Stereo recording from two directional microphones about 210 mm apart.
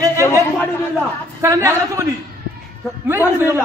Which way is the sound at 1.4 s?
15° right (ahead or behind).